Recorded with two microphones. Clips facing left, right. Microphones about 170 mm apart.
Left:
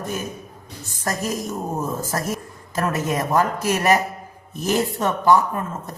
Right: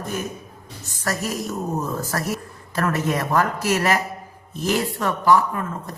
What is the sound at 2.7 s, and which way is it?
A woman's voice, 15° left (ahead or behind).